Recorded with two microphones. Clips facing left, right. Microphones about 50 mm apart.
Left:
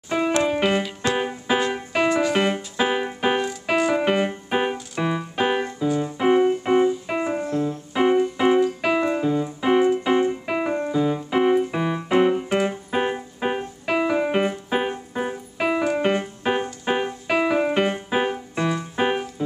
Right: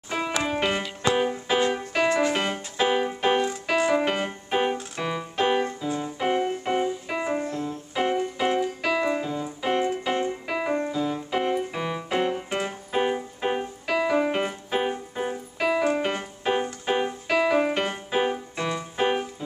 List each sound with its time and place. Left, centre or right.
0.4 s music: centre
3.7 s keyboard: centre
5.9 s music: centre
8.8 s keyboard: centre
9.1 s music: centre
10.9 s keyboard: centre
16.0 s music: centre